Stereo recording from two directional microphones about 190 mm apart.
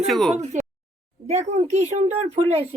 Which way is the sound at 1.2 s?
35° right (ahead or behind).